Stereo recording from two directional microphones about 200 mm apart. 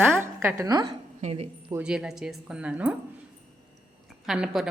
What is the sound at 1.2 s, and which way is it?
Speech, 30° right (ahead or behind).